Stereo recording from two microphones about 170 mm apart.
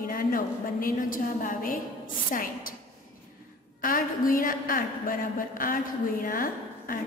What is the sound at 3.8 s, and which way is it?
A woman's voice, 55° left (ahead or behind).